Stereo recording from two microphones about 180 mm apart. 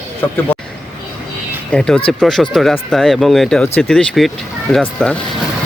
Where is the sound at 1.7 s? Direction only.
5° left (ahead or behind).